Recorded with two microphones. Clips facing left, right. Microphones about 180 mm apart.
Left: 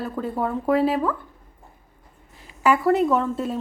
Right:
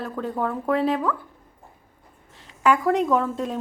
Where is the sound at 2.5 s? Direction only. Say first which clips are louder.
Left 1 dB; 5° left (ahead or behind).